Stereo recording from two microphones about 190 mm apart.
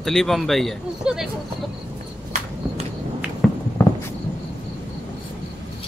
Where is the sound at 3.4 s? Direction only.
Centre (ahead or behind).